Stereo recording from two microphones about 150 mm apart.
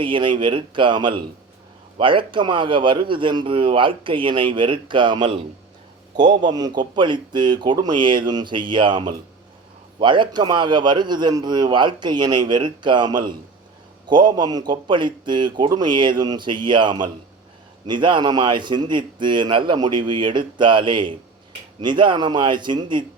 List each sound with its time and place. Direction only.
0.0 s a man's voice: 35° right (ahead or behind)